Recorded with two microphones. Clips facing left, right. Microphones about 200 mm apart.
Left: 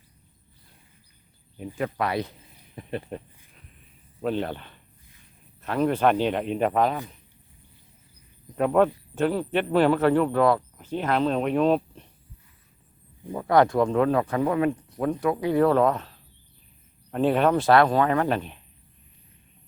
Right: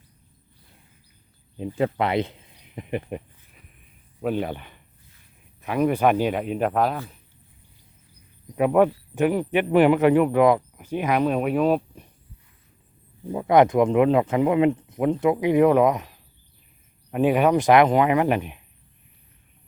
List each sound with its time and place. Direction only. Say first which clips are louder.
1.5 s speech: right 5 dB; 25° right (ahead or behind)
3.1 s a sound: right 3 dB; 15° right (ahead or behind)
4.2 s speech: right 1 dB; 10° right (ahead or behind)
8.5 s speech: right 2 dB; 10° right (ahead or behind)
13.2 s speech: right 3 dB; 15° right (ahead or behind)